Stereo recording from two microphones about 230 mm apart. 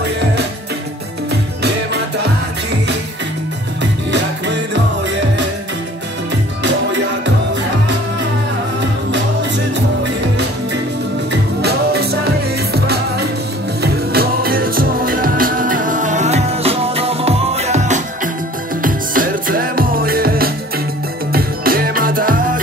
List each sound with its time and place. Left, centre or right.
1.3 s music: right
3.8 s music: right
11.6 s music: right